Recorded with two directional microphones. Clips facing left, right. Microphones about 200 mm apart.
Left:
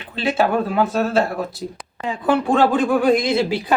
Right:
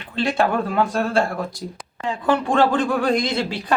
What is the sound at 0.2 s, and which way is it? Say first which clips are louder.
Speech: left 1 dB; 5° left (ahead or behind).